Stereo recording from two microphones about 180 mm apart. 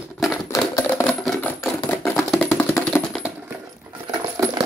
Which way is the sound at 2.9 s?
5° right (ahead or behind).